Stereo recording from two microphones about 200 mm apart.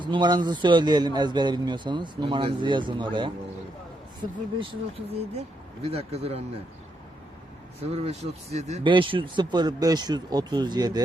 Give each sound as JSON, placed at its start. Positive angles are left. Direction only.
{"t": 0.0, "sound": "a man's voice", "side_deg": -20}
{"t": 5.4, "sound": "speech", "side_deg": -30}
{"t": 7.8, "sound": "a man's voice", "side_deg": -30}